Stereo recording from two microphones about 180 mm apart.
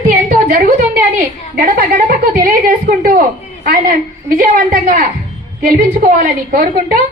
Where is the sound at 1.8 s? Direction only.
50° right (ahead or behind).